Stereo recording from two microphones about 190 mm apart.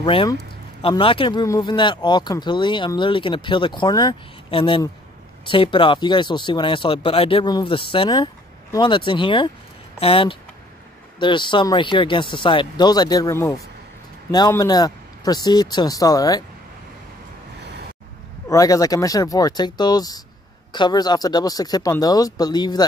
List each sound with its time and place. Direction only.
0.0 s speech: 25° left (ahead or behind)
18.5 s speech: 20° left (ahead or behind)